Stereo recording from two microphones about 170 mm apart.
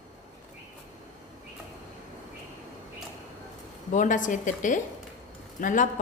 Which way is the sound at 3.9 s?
50° left (ahead or behind).